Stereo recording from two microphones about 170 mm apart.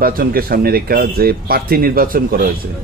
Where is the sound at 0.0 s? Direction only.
60° right (ahead or behind).